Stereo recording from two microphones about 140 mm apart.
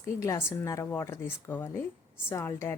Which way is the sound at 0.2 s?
20° left (ahead or behind).